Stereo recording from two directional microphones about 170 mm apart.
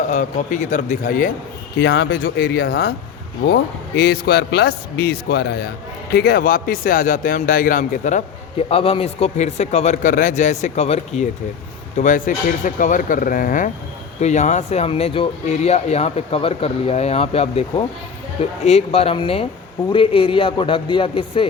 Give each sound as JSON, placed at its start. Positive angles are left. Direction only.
{"t": 0.1, "sound": "speech", "side_deg": 45}
{"t": 1.8, "sound": "speech", "side_deg": 80}
{"t": 11.9, "sound": "speech", "side_deg": 50}